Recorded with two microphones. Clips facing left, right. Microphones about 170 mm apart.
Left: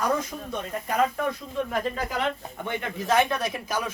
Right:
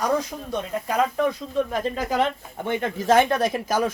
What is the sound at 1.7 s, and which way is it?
Speech, 40° right (ahead or behind).